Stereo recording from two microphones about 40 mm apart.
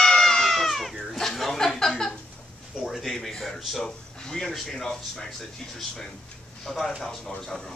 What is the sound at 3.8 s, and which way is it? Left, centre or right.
Speech, centre.